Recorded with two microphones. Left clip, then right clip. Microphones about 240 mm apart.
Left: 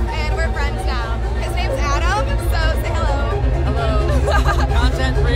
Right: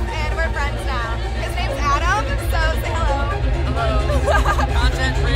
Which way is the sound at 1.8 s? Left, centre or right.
Centre.